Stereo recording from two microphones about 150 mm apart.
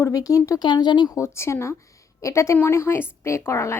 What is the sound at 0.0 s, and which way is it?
A woman's voice, 20° left (ahead or behind).